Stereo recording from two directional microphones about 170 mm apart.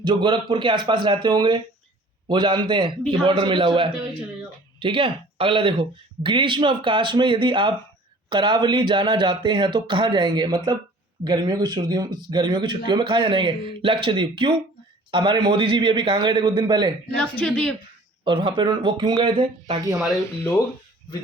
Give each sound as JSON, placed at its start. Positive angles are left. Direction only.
{"t": 0.0, "sound": "speech", "side_deg": -25}
{"t": 17.2, "sound": "a woman's voice", "side_deg": 5}
{"t": 18.3, "sound": "speech", "side_deg": -30}
{"t": 20.2, "sound": "speech", "side_deg": 15}